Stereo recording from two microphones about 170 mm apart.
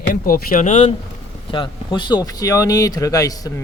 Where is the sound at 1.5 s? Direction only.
25° left (ahead or behind).